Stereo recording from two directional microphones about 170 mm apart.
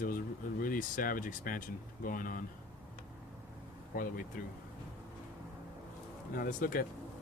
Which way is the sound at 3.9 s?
55° left (ahead or behind).